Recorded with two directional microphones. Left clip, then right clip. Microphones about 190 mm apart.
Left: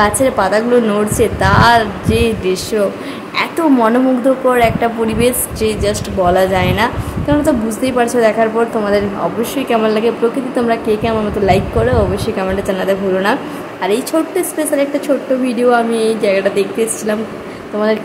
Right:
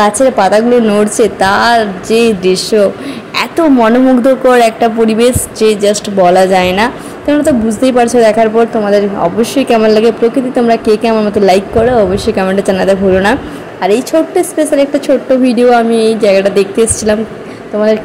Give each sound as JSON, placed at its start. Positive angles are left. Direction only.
{"t": 0.0, "sound": "a woman's voice", "side_deg": -20}